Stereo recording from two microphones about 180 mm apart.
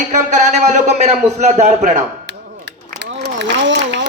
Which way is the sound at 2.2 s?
80° right.